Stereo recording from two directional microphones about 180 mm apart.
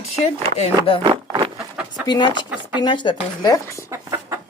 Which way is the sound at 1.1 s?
30° right (ahead or behind).